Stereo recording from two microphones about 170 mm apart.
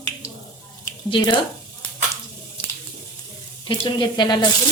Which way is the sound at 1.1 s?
30° left (ahead or behind).